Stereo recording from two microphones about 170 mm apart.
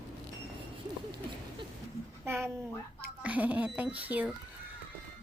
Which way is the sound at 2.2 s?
15° right (ahead or behind).